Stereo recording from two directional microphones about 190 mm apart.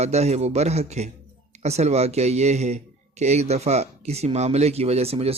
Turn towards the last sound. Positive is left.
turn(degrees=-30)  # may be behind; listen again after turning